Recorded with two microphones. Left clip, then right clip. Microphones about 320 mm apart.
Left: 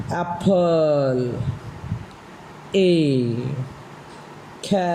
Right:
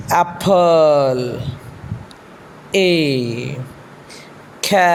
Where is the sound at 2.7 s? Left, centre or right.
Centre.